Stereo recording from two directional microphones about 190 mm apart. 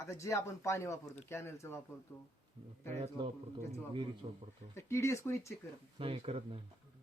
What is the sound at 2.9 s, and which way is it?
Speech, 30° right (ahead or behind).